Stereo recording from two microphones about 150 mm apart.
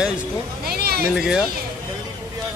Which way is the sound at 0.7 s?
90° right.